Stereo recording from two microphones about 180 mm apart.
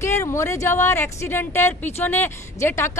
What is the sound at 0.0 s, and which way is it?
A woman's voice, 15° left (ahead or behind).